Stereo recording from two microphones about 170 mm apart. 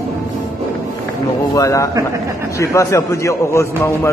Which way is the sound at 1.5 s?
20° left (ahead or behind).